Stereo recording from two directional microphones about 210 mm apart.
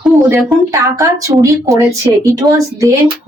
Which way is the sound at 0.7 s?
15° right (ahead or behind).